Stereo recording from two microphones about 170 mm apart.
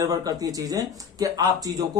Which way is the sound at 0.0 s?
20° right (ahead or behind).